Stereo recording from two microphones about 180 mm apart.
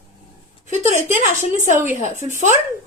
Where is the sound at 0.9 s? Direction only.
40° right (ahead or behind).